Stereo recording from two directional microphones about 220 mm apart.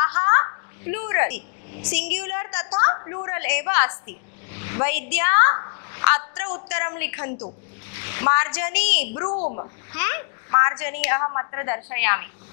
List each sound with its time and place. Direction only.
0.0 s a sound: 20° left (ahead or behind)
0.9 s a woman's voice: 15° left (ahead or behind)
2.7 s a woman's voice: 25° left (ahead or behind)
4.6 s a sound: 15° left (ahead or behind)
5.1 s a woman's voice: 15° left (ahead or behind)
9.1 s a woman's voice: 20° left (ahead or behind)